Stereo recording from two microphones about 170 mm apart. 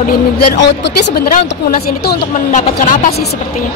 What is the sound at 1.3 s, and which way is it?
Speech, 55° left (ahead or behind).